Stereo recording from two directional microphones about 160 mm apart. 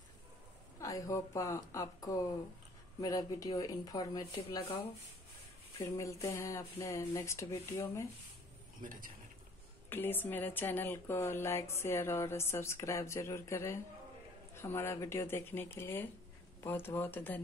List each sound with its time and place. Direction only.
0.7 s speech: 20° left (ahead or behind)
5.8 s speech: 20° left (ahead or behind)
9.8 s speech: 15° left (ahead or behind)